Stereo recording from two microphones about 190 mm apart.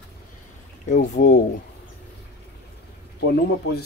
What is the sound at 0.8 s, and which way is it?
Speech, 40° left (ahead or behind).